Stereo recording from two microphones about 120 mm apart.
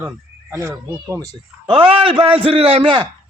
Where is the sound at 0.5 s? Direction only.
20° right (ahead or behind).